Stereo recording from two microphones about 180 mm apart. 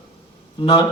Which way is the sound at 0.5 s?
30° left (ahead or behind).